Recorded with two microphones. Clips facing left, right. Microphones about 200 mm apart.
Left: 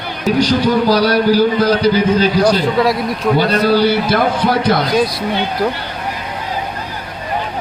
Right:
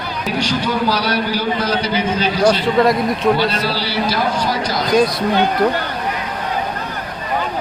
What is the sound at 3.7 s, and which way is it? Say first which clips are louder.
A man's voice: left 8 dB; 50° left (ahead or behind).